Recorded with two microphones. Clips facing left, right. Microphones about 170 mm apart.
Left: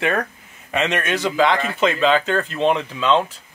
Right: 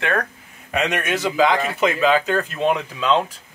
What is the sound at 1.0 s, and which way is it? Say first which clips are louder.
Speech: right 1 dB; 15° right (ahead or behind).